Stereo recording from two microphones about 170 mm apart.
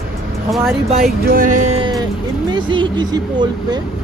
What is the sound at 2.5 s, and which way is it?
Speech, 30° right (ahead or behind).